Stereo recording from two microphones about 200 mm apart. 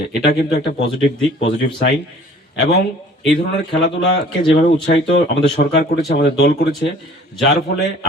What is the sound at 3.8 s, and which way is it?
Speech, 60° left (ahead or behind).